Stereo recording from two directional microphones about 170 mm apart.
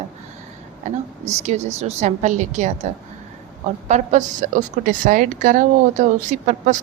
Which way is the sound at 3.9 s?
45° right (ahead or behind).